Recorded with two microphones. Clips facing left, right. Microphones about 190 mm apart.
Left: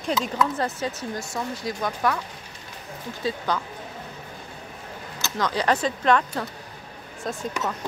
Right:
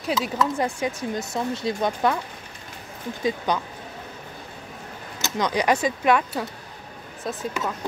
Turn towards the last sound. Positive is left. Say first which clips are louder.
# even
turn(degrees=-5)  # may be behind; listen again after turning